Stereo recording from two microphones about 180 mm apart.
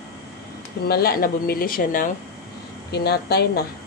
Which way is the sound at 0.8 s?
60° left (ahead or behind).